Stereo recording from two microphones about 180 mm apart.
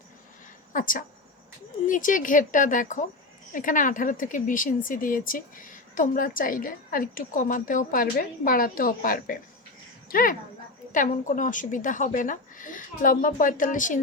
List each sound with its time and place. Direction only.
0.7 s a woman's voice: 50° left (ahead or behind)